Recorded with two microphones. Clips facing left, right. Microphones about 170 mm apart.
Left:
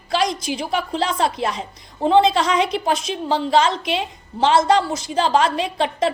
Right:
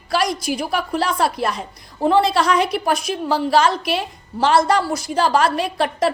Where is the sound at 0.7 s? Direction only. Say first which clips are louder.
Left 1 dB; 20° left (ahead or behind).